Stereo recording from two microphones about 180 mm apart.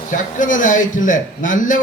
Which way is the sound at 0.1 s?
45° left (ahead or behind).